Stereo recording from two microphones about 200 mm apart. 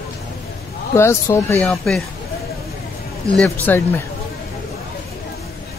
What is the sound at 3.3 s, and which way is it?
Speech, 5° left (ahead or behind).